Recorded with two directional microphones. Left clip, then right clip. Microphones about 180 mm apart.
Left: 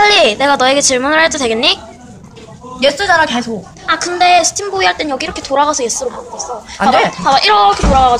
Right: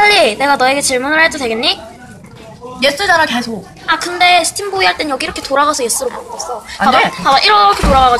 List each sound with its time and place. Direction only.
0.0 s a woman's voice: 10° left (ahead or behind)
2.8 s a woman's voice: 10° left (ahead or behind)
6.8 s speech: 20° left (ahead or behind)
7.2 s speech: 5° right (ahead or behind)